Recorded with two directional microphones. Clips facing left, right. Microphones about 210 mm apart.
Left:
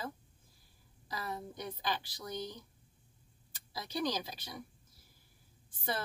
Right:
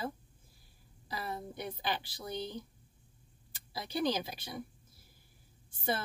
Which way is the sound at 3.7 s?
30° right (ahead or behind).